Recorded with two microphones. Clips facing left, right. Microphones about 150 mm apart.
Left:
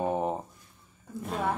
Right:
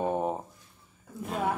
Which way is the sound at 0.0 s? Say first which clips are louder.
Even; centre (ahead or behind).